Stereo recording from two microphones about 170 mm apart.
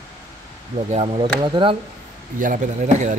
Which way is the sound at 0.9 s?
35° right (ahead or behind).